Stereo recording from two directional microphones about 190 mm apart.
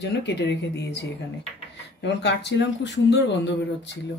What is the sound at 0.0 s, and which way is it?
Speech, 65° left (ahead or behind).